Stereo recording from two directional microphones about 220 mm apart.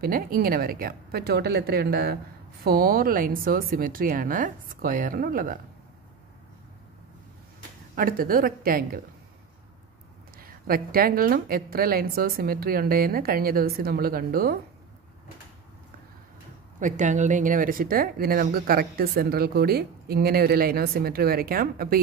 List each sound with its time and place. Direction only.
0.0 s speech: 40° right (ahead or behind)
7.9 s speech: 40° right (ahead or behind)
10.4 s speech: 40° right (ahead or behind)
16.8 s speech: 35° right (ahead or behind)